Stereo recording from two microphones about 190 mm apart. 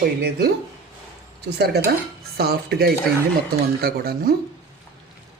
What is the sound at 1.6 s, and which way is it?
Speech, 60° right (ahead or behind).